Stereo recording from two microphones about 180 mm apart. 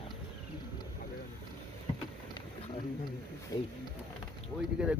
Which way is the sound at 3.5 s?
20° left (ahead or behind).